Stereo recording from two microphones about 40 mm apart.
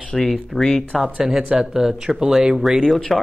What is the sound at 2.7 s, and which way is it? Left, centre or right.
Speech, centre.